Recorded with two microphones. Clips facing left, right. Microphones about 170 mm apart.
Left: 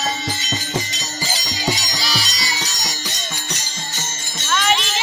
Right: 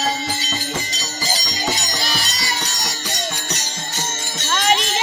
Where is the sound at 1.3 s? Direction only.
50° right (ahead or behind).